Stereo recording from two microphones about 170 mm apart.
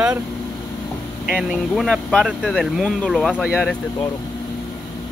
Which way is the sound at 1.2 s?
5° right (ahead or behind).